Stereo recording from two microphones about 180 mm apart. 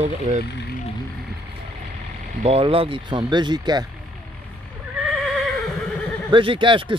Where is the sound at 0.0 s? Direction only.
40° right (ahead or behind).